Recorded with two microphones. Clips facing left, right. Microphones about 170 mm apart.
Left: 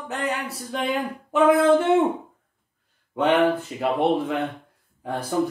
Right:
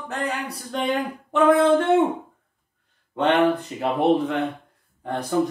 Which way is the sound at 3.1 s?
10° left (ahead or behind).